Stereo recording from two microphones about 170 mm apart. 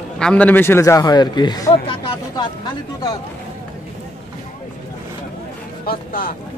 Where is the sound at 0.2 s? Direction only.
5° left (ahead or behind); by 3.1 s 25° left (ahead or behind).